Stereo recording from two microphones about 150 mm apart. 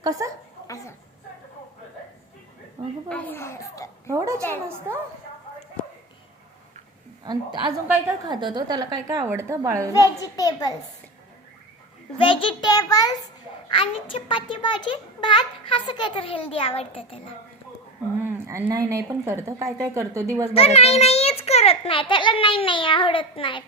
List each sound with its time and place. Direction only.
0.0 s speech: 25° right (ahead or behind)
0.7 s a sound: 20° left (ahead or behind)
3.1 s a child's voice: 10° left (ahead or behind)
4.1 s a woman's voice: 20° right (ahead or behind)
7.3 s a woman's voice: 30° right (ahead or behind)
10.2 s a child's voice: 25° left (ahead or behind)
12.1 s a child's voice: 35° left (ahead or behind)
18.2 s a woman's voice: 15° right (ahead or behind)
20.5 s a child's voice: 40° left (ahead or behind)